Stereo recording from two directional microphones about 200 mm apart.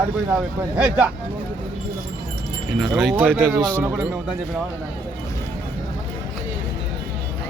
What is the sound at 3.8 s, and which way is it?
Speech, 10° right (ahead or behind).